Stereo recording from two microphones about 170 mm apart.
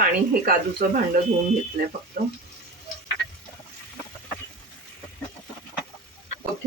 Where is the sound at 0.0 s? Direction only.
60° right (ahead or behind).